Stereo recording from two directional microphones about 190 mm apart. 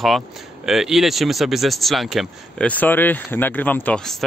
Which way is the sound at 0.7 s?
Centre (ahead or behind).